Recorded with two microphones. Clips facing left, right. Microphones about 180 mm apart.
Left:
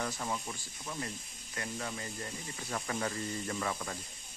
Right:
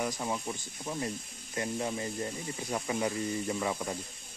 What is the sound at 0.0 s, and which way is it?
Speech, 15° right (ahead or behind).